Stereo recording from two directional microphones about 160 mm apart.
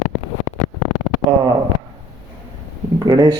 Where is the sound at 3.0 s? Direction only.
25° right (ahead or behind).